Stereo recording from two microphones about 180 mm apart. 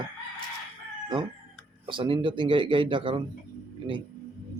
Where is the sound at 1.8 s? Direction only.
30° right (ahead or behind).